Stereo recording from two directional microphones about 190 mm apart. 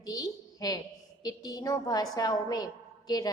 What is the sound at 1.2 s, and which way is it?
A woman's voice, 20° left (ahead or behind).